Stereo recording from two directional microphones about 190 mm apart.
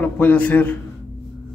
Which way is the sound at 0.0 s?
10° left (ahead or behind).